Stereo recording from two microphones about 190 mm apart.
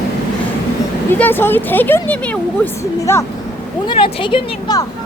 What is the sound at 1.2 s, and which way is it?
Speech, 10° left (ahead or behind).